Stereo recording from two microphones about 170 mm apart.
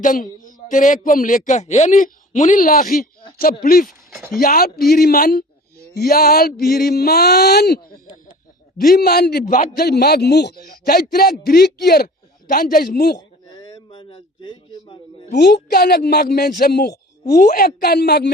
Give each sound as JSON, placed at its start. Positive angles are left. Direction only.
{"t": 0.0, "sound": "a man's voice", "side_deg": 55}
{"t": 8.8, "sound": "a man's voice", "side_deg": 60}
{"t": 10.7, "sound": "a man's voice", "side_deg": 60}
{"t": 13.1, "sound": "a sound", "side_deg": 20}
{"t": 15.3, "sound": "a man's voice", "side_deg": 70}